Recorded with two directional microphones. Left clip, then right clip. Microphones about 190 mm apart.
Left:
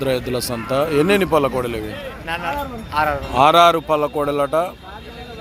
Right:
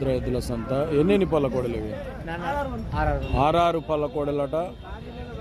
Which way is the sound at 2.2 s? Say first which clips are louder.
Left 5 dB; 20° right (ahead or behind).